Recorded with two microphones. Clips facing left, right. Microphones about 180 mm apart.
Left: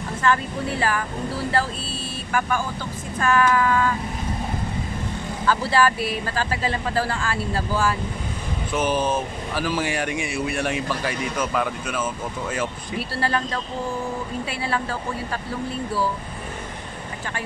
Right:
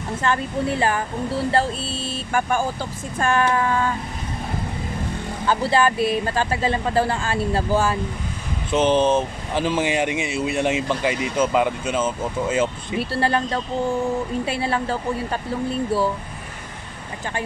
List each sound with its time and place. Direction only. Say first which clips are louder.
0.2 s speech: even; 25° right (ahead or behind)
2.3 s speech: right 2 dB; 35° right (ahead or behind)
5.5 s speech: right 1 dB; 20° right (ahead or behind)